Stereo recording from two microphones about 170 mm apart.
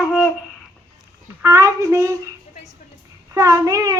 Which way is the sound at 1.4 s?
20° right (ahead or behind).